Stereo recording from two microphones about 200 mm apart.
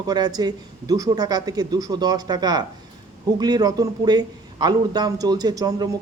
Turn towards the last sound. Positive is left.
turn(degrees=-20)  # may be behind; listen again after turning